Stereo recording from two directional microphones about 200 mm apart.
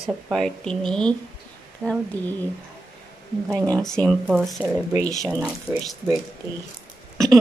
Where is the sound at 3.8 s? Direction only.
5° left (ahead or behind).